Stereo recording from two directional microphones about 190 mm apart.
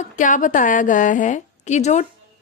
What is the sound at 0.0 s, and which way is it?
A woman's voice, 40° left (ahead or behind).